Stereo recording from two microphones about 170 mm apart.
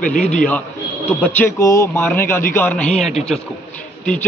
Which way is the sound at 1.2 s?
10° left (ahead or behind).